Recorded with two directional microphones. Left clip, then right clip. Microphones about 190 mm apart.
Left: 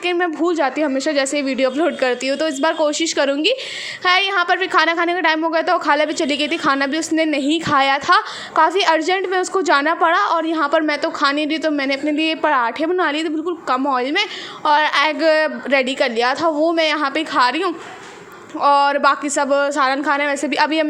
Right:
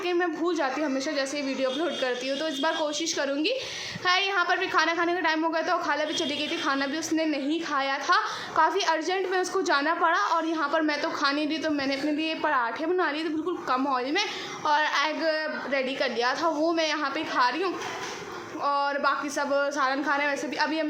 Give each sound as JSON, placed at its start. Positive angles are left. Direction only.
{"t": 0.0, "sound": "a woman's voice", "side_deg": 35}